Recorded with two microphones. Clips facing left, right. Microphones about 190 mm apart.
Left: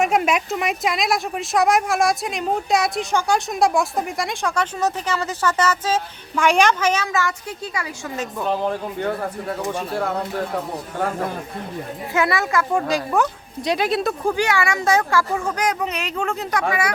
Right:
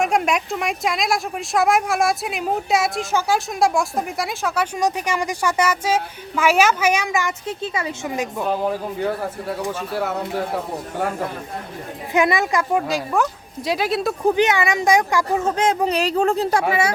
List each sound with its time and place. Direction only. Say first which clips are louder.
0.0 s speech: left 1 dB; centre (ahead or behind); by 8.2 s 25° right (ahead or behind)
8.2 s speech: even; 5° right (ahead or behind)
12.1 s speech: right 2 dB; 15° right (ahead or behind)
12.7 s speech: left 1 dB; centre (ahead or behind)
14.3 s speech: right 5 dB; 20° right (ahead or behind)